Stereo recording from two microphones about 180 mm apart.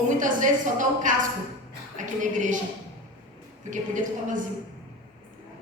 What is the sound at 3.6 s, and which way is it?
Speech, 45° right (ahead or behind).